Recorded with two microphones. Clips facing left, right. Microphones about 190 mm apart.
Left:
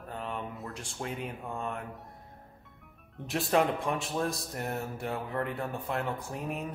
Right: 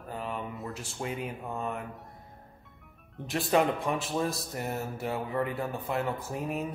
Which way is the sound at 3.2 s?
Centre (ahead or behind).